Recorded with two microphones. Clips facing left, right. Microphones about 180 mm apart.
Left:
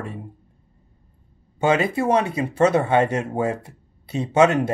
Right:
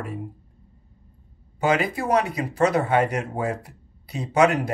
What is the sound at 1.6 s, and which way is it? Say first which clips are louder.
Speech: left 3 dB; 25° left (ahead or behind).